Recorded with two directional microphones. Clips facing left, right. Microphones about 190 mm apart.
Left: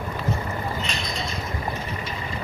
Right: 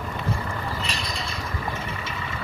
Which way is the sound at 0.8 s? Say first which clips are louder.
Left 1 dB; 35° right (ahead or behind).